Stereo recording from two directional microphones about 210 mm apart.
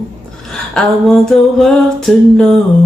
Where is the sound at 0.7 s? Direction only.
Centre (ahead or behind).